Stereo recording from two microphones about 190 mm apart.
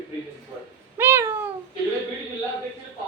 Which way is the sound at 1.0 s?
10° right (ahead or behind).